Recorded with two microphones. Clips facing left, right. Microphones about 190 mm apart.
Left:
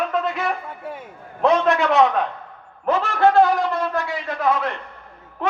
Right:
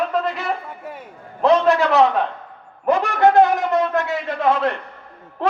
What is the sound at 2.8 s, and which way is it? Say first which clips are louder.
A man's voice: right 2 dB; 15° right (ahead or behind).